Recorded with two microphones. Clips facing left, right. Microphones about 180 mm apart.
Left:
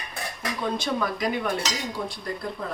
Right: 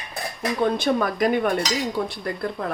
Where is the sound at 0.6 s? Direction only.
55° right (ahead or behind).